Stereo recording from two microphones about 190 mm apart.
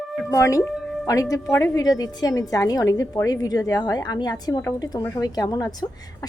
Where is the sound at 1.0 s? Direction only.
15° left (ahead or behind).